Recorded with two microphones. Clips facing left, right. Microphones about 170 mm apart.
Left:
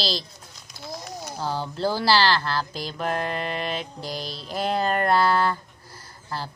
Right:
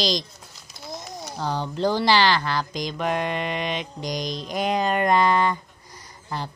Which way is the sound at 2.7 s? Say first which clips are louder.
Right 2 dB; 5° left (ahead or behind).